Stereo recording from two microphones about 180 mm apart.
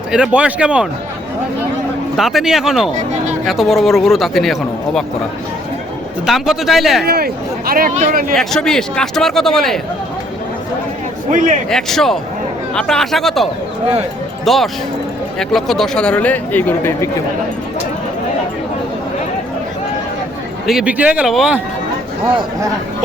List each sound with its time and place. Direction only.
0.1 s a man's voice: 5° right (ahead or behind)
2.1 s a man's voice: centre (ahead or behind)
6.2 s a man's voice: centre (ahead or behind)
7.0 s speech: 60° right (ahead or behind)
8.4 s a man's voice: centre (ahead or behind)
11.3 s speech: 45° right (ahead or behind)
11.7 s a man's voice: centre (ahead or behind)
20.7 s a man's voice: 5° right (ahead or behind)